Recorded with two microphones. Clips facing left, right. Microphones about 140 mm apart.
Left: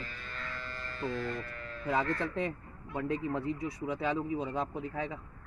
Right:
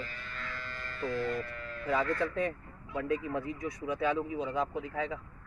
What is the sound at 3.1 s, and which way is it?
Speech, 30° left (ahead or behind).